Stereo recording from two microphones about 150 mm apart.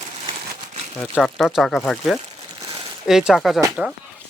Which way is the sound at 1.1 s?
Centre (ahead or behind).